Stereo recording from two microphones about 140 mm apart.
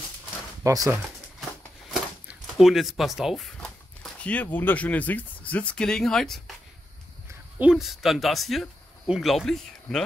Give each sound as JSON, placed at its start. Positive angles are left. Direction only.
{"t": 0.7, "sound": "speech", "side_deg": -25}
{"t": 2.5, "sound": "speech", "side_deg": 0}
{"t": 7.5, "sound": "speech", "side_deg": -5}